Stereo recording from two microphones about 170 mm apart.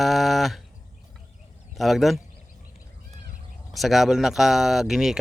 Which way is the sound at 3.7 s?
Centre (ahead or behind).